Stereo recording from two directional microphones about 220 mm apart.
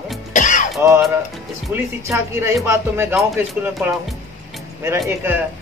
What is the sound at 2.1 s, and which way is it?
Speech, 15° right (ahead or behind).